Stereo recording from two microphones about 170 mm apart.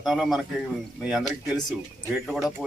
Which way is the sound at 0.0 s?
Centre (ahead or behind).